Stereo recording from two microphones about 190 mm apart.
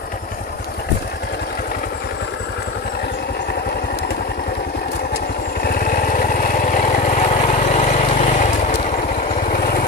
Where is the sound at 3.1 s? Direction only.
55° left (ahead or behind).